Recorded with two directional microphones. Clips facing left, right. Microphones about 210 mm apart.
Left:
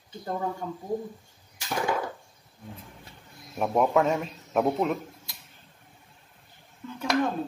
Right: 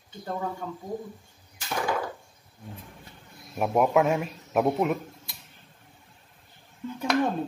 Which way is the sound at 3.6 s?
5° right (ahead or behind).